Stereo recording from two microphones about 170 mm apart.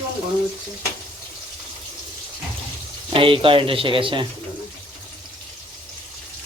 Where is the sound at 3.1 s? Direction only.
30° right (ahead or behind).